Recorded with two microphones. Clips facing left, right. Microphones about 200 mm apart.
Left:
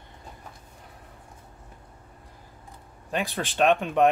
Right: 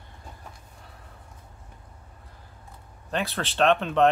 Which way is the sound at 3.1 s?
15° left (ahead or behind).